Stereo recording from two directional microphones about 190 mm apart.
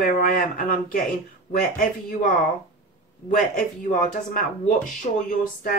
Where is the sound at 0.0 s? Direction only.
45° left (ahead or behind).